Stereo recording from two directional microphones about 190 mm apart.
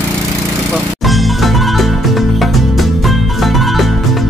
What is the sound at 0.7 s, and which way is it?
Music, centre (ahead or behind).